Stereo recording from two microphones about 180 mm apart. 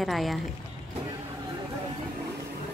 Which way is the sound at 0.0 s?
Centre (ahead or behind).